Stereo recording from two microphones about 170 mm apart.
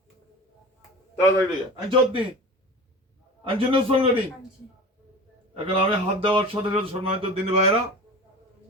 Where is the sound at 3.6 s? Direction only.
30° right (ahead or behind).